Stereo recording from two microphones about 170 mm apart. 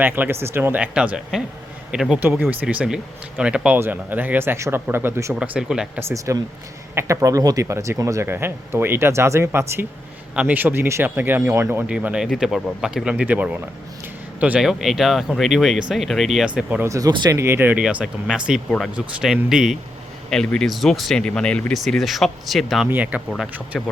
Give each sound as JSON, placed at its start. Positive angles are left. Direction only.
{"t": 0.0, "sound": "speech", "side_deg": -10}
{"t": 6.1, "sound": "speech", "side_deg": -20}
{"t": 16.9, "sound": "speech", "side_deg": -20}